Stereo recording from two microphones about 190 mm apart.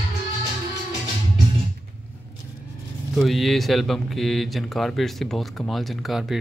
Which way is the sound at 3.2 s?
Centre (ahead or behind).